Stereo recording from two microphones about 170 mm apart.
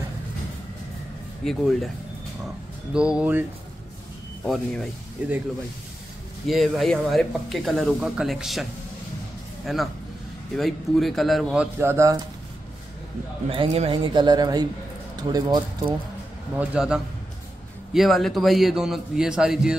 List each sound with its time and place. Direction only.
1.4 s speech: centre (ahead or behind)
5.2 s speech: 10° right (ahead or behind)
6.4 s speech: centre (ahead or behind)
9.7 s speech: centre (ahead or behind); by 12.2 s 15° right (ahead or behind)
13.5 s speech: 35° right (ahead or behind)
16.5 s speech: 5° right (ahead or behind)